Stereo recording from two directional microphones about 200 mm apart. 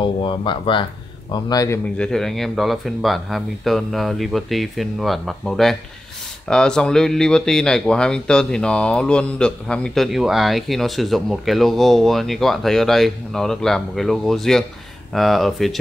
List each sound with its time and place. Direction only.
0.0 s speech: 25° left (ahead or behind)
2.0 s speech: 5° left (ahead or behind)